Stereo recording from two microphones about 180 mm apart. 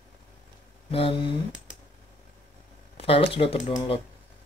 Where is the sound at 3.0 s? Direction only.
30° left (ahead or behind).